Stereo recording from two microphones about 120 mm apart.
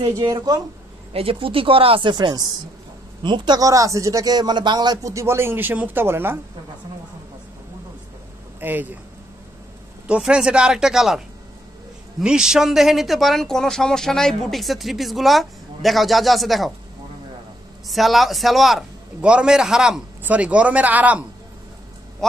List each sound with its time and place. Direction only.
0.2 s speech: 30° right (ahead or behind)
1.1 s a man's voice: 50° right (ahead or behind); by 6.4 s 20° right (ahead or behind)
8.5 s speech: 15° right (ahead or behind)
10.0 s speech: 10° right (ahead or behind)
17.8 s speech: centre (ahead or behind)
22.2 s speech: 5° left (ahead or behind)